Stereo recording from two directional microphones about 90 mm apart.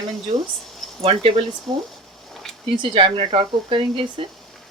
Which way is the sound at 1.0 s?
90° right.